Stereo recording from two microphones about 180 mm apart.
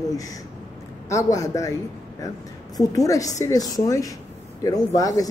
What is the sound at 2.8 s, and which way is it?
Speech, 20° left (ahead or behind).